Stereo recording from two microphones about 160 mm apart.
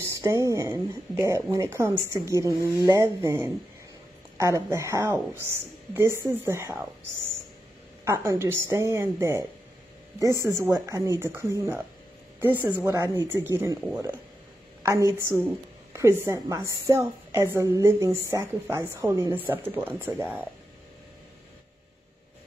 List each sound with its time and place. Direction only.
0.0 s a woman's voice: 20° right (ahead or behind)
8.0 s a woman's voice: 15° right (ahead or behind)
10.4 s a woman's voice: 20° right (ahead or behind)